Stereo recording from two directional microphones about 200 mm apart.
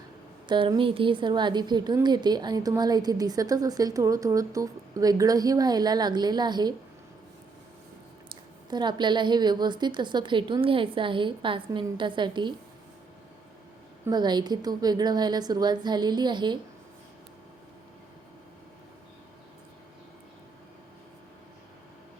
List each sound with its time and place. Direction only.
0.4 s a woman's voice: 25° right (ahead or behind)
8.7 s a woman's voice: 20° right (ahead or behind)
14.1 s a woman's voice: 20° right (ahead or behind)